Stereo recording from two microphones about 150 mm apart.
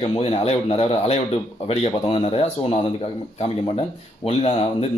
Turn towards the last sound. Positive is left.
turn(degrees=40)  # may be behind; listen again after turning